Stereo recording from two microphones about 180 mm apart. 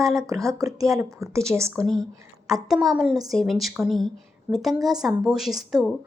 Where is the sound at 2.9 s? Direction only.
5° right (ahead or behind).